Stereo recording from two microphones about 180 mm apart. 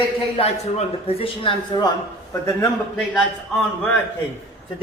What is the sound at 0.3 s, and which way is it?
Speech, 35° left (ahead or behind).